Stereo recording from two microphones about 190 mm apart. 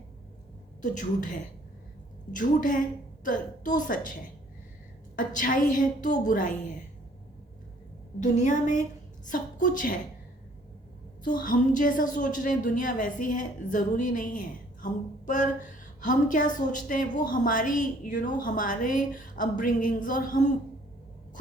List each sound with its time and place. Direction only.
0.8 s a woman's voice: 45° left (ahead or behind)
8.2 s a woman's voice: 40° left (ahead or behind)
11.2 s a woman's voice: 45° left (ahead or behind)